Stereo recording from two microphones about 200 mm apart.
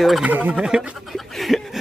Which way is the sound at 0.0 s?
5° right (ahead or behind).